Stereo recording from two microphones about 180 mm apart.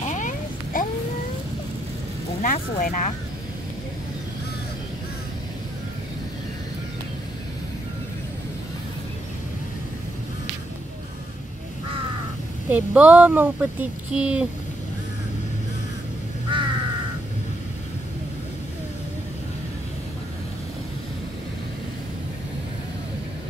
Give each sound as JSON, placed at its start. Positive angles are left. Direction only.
{"t": 0.1, "sound": "a sound", "side_deg": 45}
{"t": 2.4, "sound": "speech", "side_deg": 45}
{"t": 12.6, "sound": "speech", "side_deg": -10}
{"t": 16.5, "sound": "crow", "side_deg": -25}